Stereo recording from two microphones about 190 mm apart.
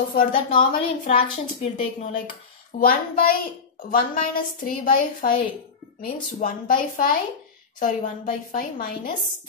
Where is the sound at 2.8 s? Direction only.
50° left (ahead or behind).